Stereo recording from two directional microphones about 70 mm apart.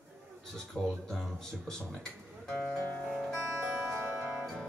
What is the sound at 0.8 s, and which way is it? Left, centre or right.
Speech, centre.